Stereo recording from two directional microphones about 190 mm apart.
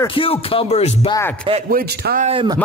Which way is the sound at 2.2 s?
25° right (ahead or behind).